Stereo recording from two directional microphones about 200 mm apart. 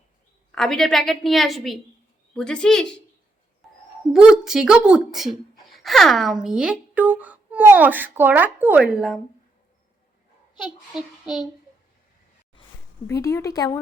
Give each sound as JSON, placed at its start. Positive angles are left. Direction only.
{"t": 0.5, "sound": "speech", "side_deg": 0}
{"t": 4.1, "sound": "speech", "side_deg": -5}
{"t": 10.6, "sound": "speech", "side_deg": 0}
{"t": 13.1, "sound": "a woman's voice", "side_deg": 15}